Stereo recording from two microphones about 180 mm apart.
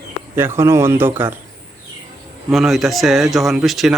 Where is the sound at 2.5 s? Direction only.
Centre (ahead or behind).